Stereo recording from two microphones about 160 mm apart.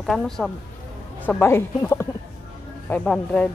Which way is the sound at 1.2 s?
15° left (ahead or behind).